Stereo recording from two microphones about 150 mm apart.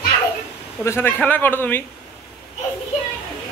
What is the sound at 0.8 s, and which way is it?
A man's voice, 15° left (ahead or behind).